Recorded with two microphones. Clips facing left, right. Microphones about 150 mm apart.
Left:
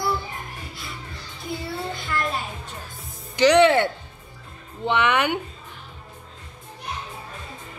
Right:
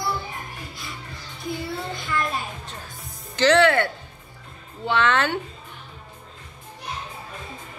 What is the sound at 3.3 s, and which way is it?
Speech, 15° left (ahead or behind).